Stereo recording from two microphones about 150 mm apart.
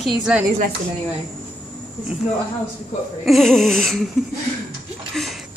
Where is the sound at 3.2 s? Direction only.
Centre (ahead or behind).